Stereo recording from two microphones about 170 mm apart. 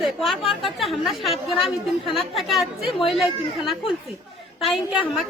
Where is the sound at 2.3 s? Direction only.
Centre (ahead or behind).